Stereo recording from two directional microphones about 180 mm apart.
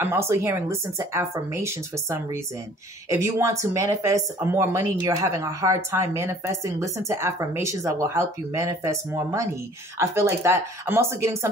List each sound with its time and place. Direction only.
0.0 s speech: 15° right (ahead or behind)